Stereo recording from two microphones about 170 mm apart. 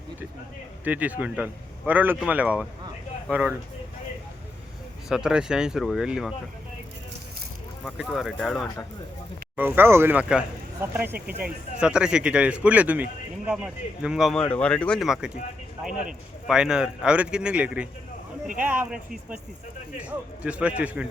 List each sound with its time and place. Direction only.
0.9 s speech: 10° right (ahead or behind)
5.0 s speech: 5° right (ahead or behind)
7.9 s speech: centre (ahead or behind)
9.6 s speech: 10° right (ahead or behind)
16.5 s speech: 5° right (ahead or behind)